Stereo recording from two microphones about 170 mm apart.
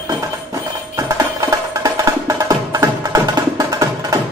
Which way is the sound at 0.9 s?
15° right (ahead or behind).